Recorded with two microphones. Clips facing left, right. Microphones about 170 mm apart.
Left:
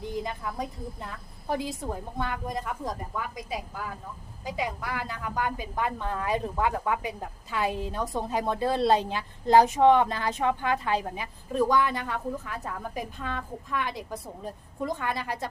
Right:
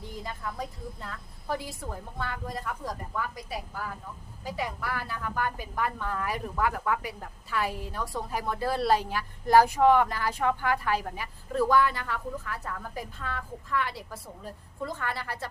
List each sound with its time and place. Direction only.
0.0 s a woman's voice: 20° left (ahead or behind)